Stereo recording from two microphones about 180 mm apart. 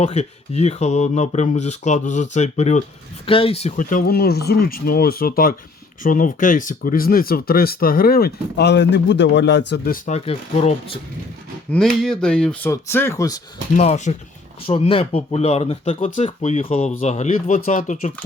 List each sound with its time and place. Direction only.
0.0 s speech: 35° left (ahead or behind); by 10.0 s 65° left (ahead or behind)
10.1 s speech: 35° left (ahead or behind)
11.7 s speech: centre (ahead or behind); by 13.4 s 20° left (ahead or behind)
13.7 s speech: 40° left (ahead or behind)